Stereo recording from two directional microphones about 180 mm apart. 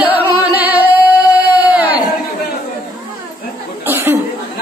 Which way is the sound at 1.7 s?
10° right (ahead or behind).